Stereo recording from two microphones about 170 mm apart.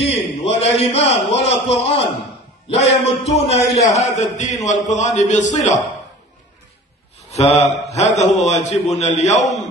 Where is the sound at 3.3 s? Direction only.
40° left (ahead or behind).